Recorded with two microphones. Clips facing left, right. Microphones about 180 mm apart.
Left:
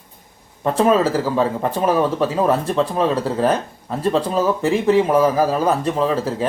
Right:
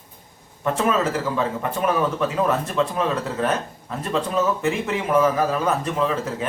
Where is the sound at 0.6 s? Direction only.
35° left (ahead or behind).